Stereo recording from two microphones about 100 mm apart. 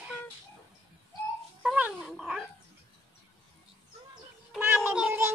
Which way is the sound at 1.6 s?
15° right (ahead or behind).